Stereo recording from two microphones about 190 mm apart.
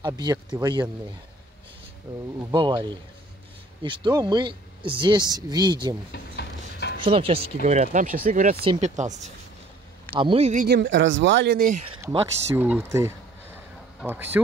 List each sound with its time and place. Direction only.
0.0 s speech: 20° right (ahead or behind)
2.5 s speech: 25° right (ahead or behind)
6.1 s a sound: 60° left (ahead or behind)
7.0 s speech: 30° right (ahead or behind)
10.7 s speech: 70° right (ahead or behind); by 11.8 s 50° right (ahead or behind)
12.5 s speech: 10° right (ahead or behind)